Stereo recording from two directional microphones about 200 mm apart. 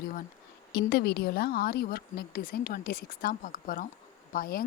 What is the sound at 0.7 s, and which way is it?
A woman's voice, 55° left (ahead or behind).